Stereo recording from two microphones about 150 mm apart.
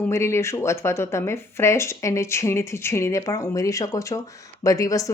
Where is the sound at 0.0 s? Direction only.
20° left (ahead or behind).